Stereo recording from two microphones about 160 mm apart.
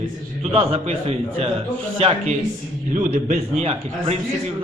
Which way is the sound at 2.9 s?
50° right (ahead or behind).